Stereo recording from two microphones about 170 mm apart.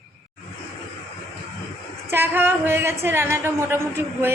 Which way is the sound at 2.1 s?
15° right (ahead or behind).